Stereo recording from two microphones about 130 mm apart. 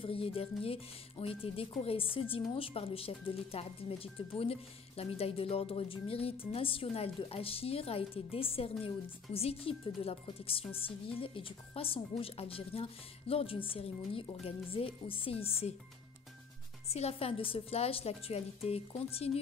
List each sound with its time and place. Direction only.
0.0 s speech: 45° left (ahead or behind)
16.9 s speech: 50° left (ahead or behind)